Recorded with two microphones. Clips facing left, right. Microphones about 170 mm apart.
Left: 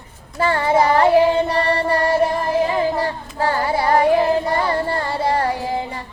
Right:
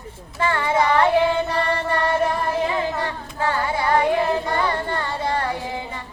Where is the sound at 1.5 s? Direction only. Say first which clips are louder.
Left 4 dB; 35° left (ahead or behind).